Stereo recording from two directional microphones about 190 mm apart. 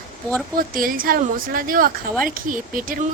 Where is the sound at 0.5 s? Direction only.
50° right (ahead or behind).